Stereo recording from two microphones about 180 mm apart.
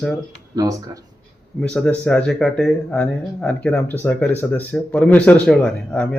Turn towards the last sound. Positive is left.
turn(degrees=5)  # may be behind; listen again after turning